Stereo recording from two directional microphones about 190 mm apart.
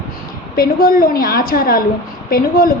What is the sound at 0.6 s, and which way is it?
A woman's voice, 50° left (ahead or behind).